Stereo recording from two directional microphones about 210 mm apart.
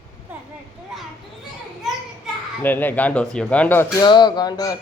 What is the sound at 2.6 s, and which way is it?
Speech, 10° left (ahead or behind).